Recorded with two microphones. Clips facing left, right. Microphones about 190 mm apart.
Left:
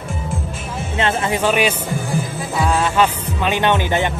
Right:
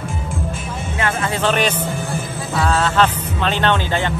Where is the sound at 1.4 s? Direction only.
10° left (ahead or behind).